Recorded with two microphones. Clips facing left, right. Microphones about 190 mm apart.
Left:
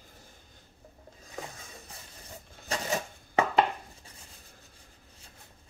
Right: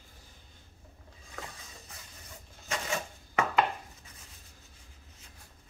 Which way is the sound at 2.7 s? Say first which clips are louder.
Left 2 dB; 35° left (ahead or behind).